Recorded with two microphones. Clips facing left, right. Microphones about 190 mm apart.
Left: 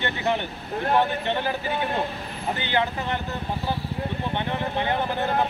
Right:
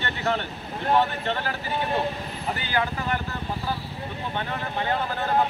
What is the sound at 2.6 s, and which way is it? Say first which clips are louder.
Speech: left 2 dB; 25° left (ahead or behind).